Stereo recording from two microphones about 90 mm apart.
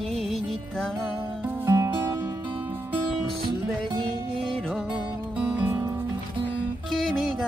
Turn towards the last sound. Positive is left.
turn(degrees=-20)  # may be behind; listen again after turning